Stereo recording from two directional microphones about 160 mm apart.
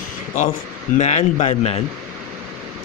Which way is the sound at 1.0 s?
45° left (ahead or behind).